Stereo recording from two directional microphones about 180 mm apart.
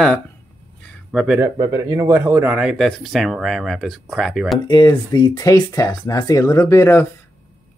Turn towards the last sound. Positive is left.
turn(degrees=15)  # may be behind; listen again after turning